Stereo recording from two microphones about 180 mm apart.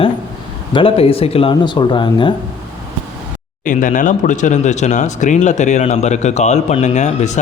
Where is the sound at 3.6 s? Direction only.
45° left (ahead or behind).